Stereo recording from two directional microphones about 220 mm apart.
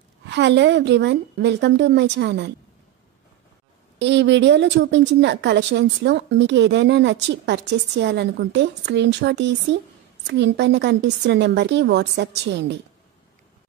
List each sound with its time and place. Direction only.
0.3 s a woman's voice: 55° right (ahead or behind)
4.0 s a woman's voice: 55° right (ahead or behind)